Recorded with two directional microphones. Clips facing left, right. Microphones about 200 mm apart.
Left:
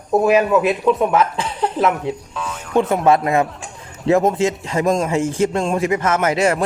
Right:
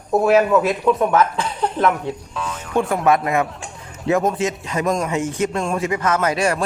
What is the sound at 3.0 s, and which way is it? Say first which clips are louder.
Speech: left 2 dB; 30° left (ahead or behind).